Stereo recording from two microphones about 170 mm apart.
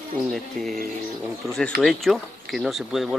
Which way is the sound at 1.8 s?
Centre (ahead or behind).